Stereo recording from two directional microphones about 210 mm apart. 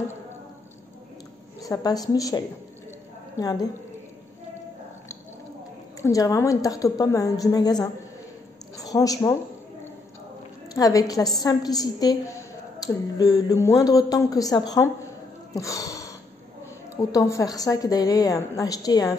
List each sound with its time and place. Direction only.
1.6 s a woman's voice: 15° left (ahead or behind)
6.0 s a woman's voice: 15° left (ahead or behind)
10.7 s a woman's voice: 15° left (ahead or behind)
15.5 s a sound: 15° left (ahead or behind)
16.9 s a woman's voice: 15° left (ahead or behind)